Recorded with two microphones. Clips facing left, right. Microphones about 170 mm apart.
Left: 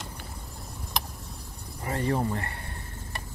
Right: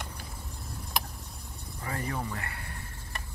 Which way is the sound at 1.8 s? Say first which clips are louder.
Left 7 dB; 30° left (ahead or behind).